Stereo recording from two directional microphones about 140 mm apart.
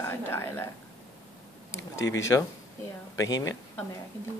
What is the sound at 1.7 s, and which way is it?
Speech, 20° left (ahead or behind).